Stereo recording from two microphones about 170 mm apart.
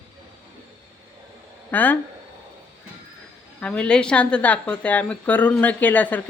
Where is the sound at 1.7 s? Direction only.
10° left (ahead or behind).